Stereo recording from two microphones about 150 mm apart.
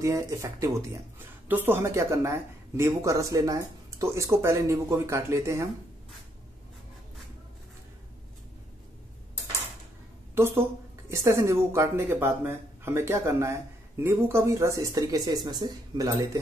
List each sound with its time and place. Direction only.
0.0 s speech: 20° right (ahead or behind)
10.3 s speech: 15° right (ahead or behind)